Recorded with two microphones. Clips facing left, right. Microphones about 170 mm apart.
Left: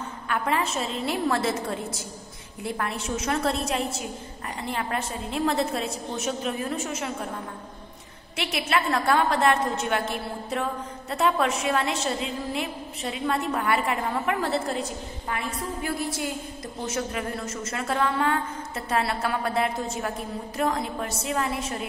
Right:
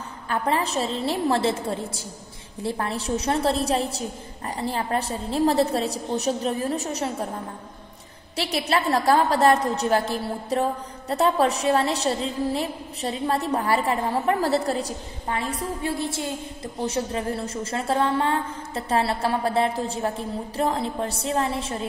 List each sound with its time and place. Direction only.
0.3 s a woman's voice: 35° right (ahead or behind)
8.4 s a woman's voice: 35° right (ahead or behind)